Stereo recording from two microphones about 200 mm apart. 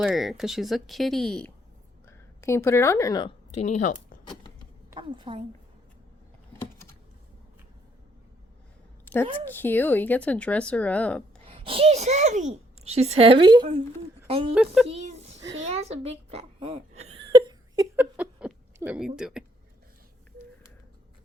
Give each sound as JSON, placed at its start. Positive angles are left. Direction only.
{"t": 0.0, "sound": "a woman's voice", "side_deg": 0}
{"t": 3.5, "sound": "speech", "side_deg": 35}
{"t": 4.9, "sound": "a woman's voice", "side_deg": -25}
{"t": 9.1, "sound": "a sound", "side_deg": 10}
{"t": 9.5, "sound": "speech", "side_deg": 10}
{"t": 11.4, "sound": "a child's voice", "side_deg": -25}
{"t": 14.5, "sound": "speech", "side_deg": -5}
{"t": 14.8, "sound": "a sound", "side_deg": -30}
{"t": 15.7, "sound": "speech", "side_deg": -30}
{"t": 17.0, "sound": "whimper", "side_deg": -30}
{"t": 17.9, "sound": "chuckle", "side_deg": -10}